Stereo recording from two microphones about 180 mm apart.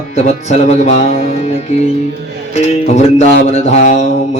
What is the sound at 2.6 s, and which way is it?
Speech, 35° left (ahead or behind).